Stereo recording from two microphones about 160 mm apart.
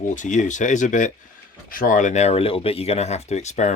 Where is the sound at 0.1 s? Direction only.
50° left (ahead or behind).